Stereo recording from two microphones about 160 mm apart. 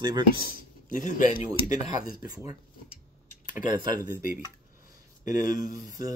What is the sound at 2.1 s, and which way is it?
Speech, 25° right (ahead or behind).